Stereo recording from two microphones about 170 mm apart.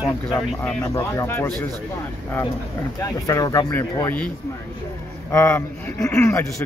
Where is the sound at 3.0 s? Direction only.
20° left (ahead or behind).